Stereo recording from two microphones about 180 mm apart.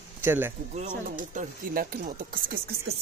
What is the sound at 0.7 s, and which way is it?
Speech, 45° right (ahead or behind).